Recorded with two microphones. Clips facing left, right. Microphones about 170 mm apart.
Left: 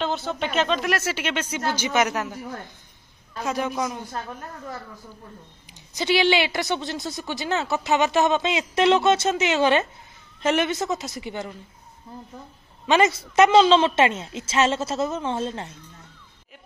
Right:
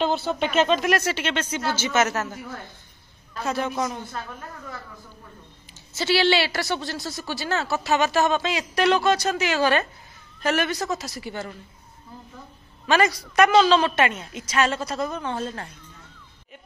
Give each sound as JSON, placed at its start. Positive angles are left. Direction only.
{"t": 0.3, "sound": "speech", "side_deg": -5}
{"t": 3.4, "sound": "speech", "side_deg": 10}
{"t": 5.9, "sound": "a woman's voice", "side_deg": 15}
{"t": 12.8, "sound": "a woman's voice", "side_deg": 20}